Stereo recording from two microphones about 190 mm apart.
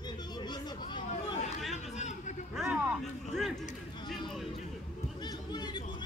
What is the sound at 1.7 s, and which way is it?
Chatter, 35° left (ahead or behind).